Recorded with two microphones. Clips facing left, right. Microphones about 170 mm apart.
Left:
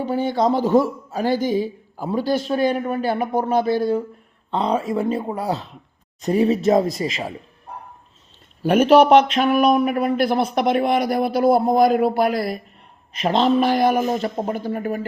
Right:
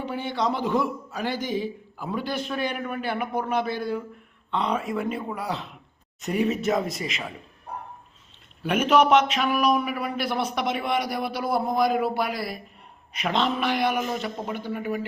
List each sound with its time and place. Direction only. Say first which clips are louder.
0.0 s a man's voice: left 7 dB; 40° left (ahead or behind)
8.6 s a man's voice: left 7 dB; 35° left (ahead or behind)
9.7 s a man's voice: left 7 dB; 55° left (ahead or behind)
10.2 s a man's voice: left 7 dB; 35° left (ahead or behind)
13.2 s a man's voice: left 8 dB; 35° left (ahead or behind)